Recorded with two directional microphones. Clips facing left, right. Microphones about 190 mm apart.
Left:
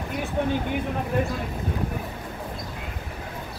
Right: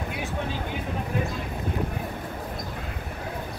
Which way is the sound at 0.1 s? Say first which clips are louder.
Left 10 dB; 55° left (ahead or behind).